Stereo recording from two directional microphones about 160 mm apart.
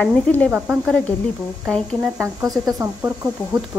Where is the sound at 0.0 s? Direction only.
10° left (ahead or behind).